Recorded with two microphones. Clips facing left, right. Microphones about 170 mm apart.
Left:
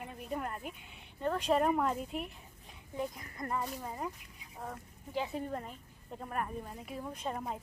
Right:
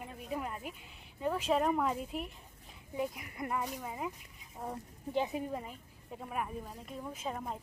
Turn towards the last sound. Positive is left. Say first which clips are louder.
# left 1 dB
turn(degrees=0)  # may be behind; listen again after turning